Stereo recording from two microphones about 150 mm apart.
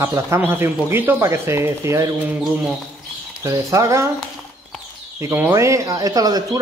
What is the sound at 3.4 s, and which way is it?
Speech, 20° right (ahead or behind).